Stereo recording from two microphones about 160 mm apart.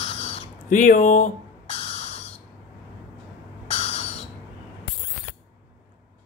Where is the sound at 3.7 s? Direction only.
40° left (ahead or behind).